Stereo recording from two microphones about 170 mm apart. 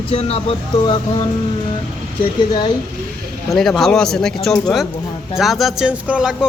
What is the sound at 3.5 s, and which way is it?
Speech, centre (ahead or behind).